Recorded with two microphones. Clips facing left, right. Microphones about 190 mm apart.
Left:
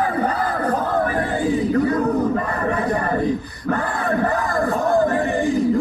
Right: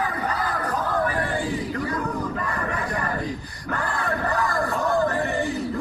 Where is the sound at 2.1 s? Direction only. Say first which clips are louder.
Left 9 dB; 55° left (ahead or behind).